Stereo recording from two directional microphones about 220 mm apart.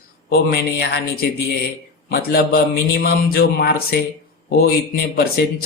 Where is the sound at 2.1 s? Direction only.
45° left (ahead or behind).